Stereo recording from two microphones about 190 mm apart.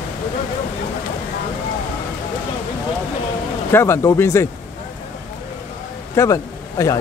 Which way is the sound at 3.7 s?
15° left (ahead or behind).